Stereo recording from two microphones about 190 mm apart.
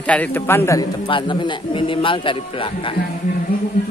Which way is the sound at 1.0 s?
25° left (ahead or behind).